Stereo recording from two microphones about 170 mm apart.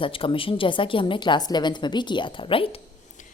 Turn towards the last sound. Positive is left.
turn(degrees=35)  # may be behind; listen again after turning